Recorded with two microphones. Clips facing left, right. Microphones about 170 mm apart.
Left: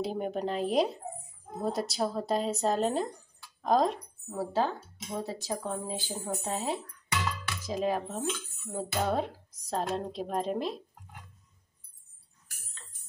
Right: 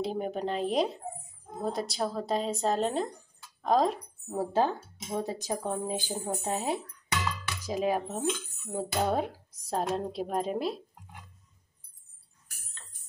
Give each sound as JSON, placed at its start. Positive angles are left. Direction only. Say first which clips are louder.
{"t": 0.0, "sound": "speech", "louder": "even", "side_deg": 0}
{"t": 4.3, "sound": "speech", "louder": "right 2 dB", "side_deg": -20}